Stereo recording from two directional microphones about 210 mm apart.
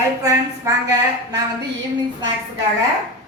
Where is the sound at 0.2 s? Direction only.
15° right (ahead or behind).